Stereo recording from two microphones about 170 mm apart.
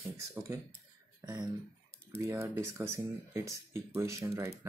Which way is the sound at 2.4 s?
15° right (ahead or behind).